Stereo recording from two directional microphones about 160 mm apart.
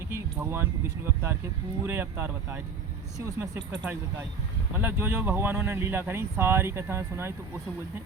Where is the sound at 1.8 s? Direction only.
15° right (ahead or behind).